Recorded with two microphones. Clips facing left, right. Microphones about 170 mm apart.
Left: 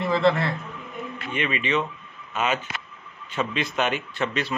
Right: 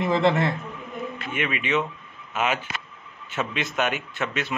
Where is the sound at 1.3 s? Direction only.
10° right (ahead or behind).